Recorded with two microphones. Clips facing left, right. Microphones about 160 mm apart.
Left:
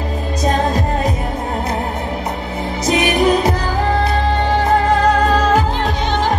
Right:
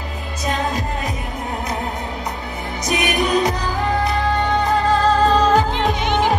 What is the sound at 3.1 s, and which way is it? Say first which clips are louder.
Music: left 3 dB; 20° left (ahead or behind).